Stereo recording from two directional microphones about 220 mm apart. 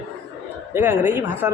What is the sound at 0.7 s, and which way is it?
Speech, 10° right (ahead or behind).